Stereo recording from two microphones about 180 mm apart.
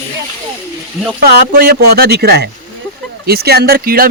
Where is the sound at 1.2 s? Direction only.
55° right (ahead or behind).